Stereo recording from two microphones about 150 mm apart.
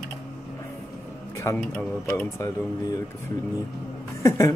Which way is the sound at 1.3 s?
20° left (ahead or behind).